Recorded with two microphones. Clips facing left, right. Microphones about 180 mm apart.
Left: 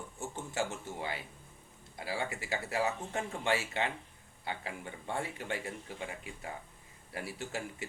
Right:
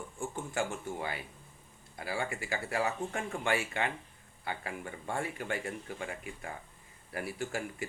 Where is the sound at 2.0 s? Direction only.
25° left (ahead or behind).